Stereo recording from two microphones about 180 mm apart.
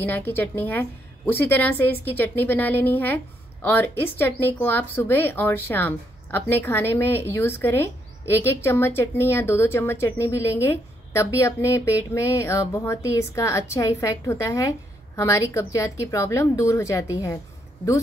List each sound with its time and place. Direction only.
0.0 s speech: 10° left (ahead or behind)